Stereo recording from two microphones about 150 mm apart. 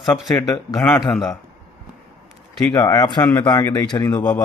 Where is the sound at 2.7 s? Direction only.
25° left (ahead or behind).